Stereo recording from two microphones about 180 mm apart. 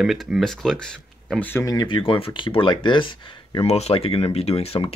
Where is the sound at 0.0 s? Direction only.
Centre (ahead or behind).